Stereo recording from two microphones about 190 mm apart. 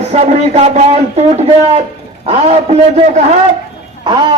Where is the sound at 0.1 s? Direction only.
35° right (ahead or behind).